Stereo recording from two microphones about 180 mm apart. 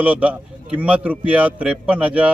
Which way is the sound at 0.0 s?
10° right (ahead or behind).